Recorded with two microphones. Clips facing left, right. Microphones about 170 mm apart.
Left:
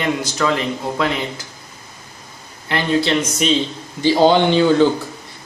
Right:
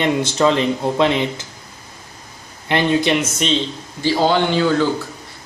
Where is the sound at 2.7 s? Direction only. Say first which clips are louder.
Right 2 dB; 20° right (ahead or behind).